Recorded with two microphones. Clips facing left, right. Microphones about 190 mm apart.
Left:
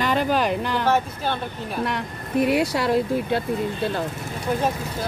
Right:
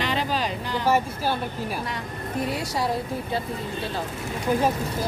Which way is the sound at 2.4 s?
70° left (ahead or behind).